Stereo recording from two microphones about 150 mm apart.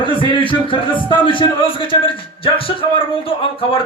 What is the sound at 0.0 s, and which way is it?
A man's voice, 35° left (ahead or behind).